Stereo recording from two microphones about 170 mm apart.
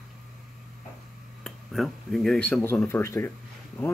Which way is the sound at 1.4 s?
Centre (ahead or behind).